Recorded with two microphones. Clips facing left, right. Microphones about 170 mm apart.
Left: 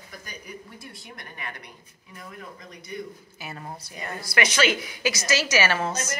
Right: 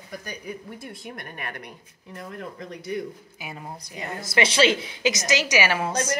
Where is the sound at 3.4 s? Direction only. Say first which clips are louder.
Even; 10° right (ahead or behind).